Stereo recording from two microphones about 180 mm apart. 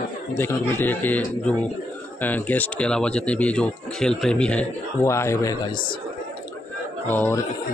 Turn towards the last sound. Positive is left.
turn(degrees=10)  # may be behind; listen again after turning